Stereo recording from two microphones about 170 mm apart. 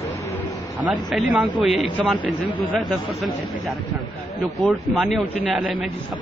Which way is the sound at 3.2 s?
Centre (ahead or behind).